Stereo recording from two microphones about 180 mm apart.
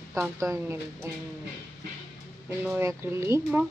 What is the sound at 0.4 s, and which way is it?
Speech, 15° right (ahead or behind).